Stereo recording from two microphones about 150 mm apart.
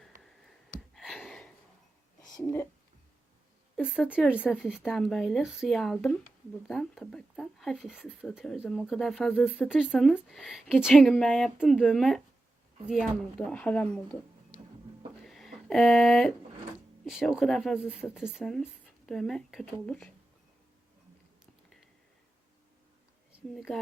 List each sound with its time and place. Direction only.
0.4 s a sound: centre (ahead or behind)
2.4 s speech: 20° left (ahead or behind)
3.8 s a woman's voice: 5° right (ahead or behind)
13.4 s speech: 10° left (ahead or behind)
15.2 s a sound: centre (ahead or behind)
17.1 s speech: centre (ahead or behind)
23.5 s speech: centre (ahead or behind)